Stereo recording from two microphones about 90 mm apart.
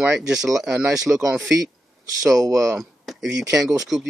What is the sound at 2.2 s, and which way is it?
Speech, 40° right (ahead or behind).